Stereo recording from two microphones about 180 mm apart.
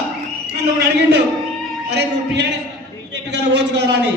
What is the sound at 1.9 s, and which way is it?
Speech, 70° right (ahead or behind).